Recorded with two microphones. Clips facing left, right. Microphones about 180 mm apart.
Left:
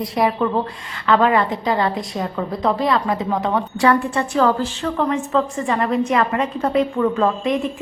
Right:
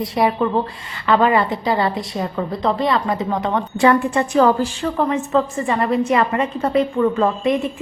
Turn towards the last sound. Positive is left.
turn(degrees=-5)  # may be behind; listen again after turning